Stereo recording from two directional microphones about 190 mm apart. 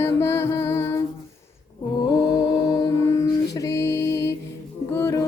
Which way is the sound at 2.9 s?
15° left (ahead or behind).